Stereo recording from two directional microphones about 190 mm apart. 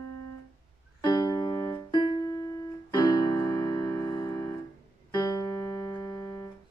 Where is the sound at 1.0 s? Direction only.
20° left (ahead or behind).